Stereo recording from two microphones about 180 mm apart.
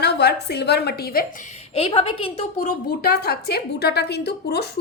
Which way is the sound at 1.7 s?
30° left (ahead or behind).